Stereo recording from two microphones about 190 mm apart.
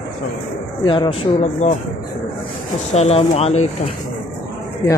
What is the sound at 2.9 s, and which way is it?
Speech, 35° left (ahead or behind).